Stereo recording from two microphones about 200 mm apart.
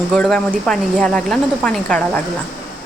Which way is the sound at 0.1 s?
5° left (ahead or behind).